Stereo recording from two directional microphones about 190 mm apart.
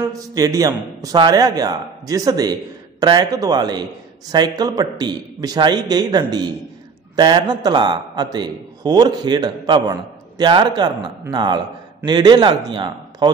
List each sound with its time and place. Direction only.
0.0 s a man's voice: 20° right (ahead or behind)